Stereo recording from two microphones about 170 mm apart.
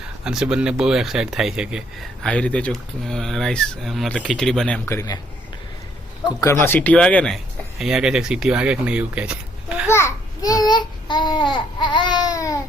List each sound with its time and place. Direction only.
0.3 s speech: 5° right (ahead or behind)
2.2 s speech: 5° left (ahead or behind)
6.4 s speech: 15° left (ahead or behind); by 9.8 s 5° right (ahead or behind)
9.8 s babbling: 15° left (ahead or behind)